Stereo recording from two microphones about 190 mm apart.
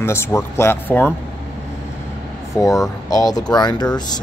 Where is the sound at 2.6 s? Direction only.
15° left (ahead or behind).